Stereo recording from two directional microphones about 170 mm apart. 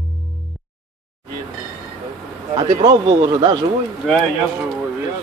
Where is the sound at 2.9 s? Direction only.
25° right (ahead or behind).